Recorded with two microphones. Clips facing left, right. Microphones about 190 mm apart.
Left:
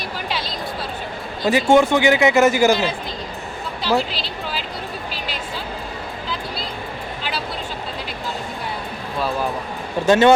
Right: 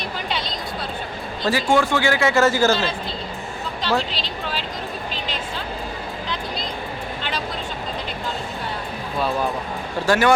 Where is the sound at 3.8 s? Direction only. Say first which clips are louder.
Left 3 dB; 10° left (ahead or behind).